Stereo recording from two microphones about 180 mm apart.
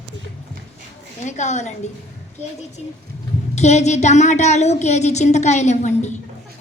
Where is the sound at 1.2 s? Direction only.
40° left (ahead or behind).